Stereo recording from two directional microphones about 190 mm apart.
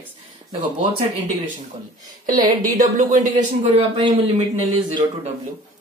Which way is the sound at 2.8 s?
40° right (ahead or behind).